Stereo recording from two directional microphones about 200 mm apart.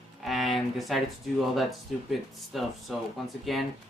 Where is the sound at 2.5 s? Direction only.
Centre (ahead or behind).